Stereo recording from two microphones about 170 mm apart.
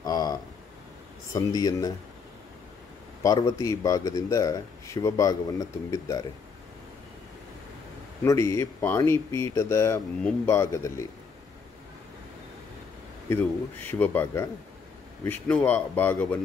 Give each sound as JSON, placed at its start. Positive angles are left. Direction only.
{"t": 0.0, "sound": "a sound", "side_deg": 20}
{"t": 1.3, "sound": "speech", "side_deg": 20}
{"t": 3.2, "sound": "speech", "side_deg": 20}
{"t": 8.2, "sound": "speech", "side_deg": 15}
{"t": 13.3, "sound": "speech", "side_deg": 10}